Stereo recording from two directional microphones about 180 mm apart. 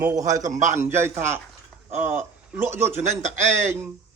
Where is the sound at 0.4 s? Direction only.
45° right (ahead or behind).